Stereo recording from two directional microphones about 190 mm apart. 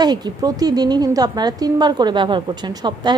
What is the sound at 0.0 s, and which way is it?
A woman's voice, 20° right (ahead or behind).